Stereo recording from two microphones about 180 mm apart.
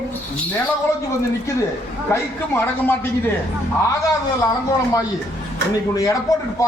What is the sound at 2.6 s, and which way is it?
Speech, 10° left (ahead or behind).